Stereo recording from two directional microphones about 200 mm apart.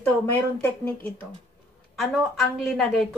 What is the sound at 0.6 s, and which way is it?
Speech, 10° left (ahead or behind).